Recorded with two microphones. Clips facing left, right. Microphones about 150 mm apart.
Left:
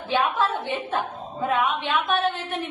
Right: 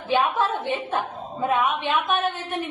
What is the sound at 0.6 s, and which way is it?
A woman's voice, 15° right (ahead or behind).